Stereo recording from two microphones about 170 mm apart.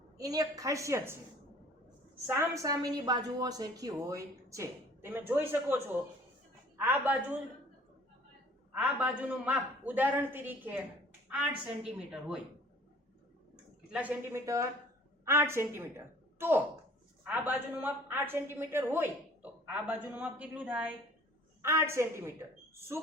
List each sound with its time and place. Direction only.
0.2 s a woman's voice: 20° right (ahead or behind)
2.2 s a woman's voice: 15° right (ahead or behind)
8.7 s a woman's voice: 10° right (ahead or behind)
13.9 s a woman's voice: 10° right (ahead or behind)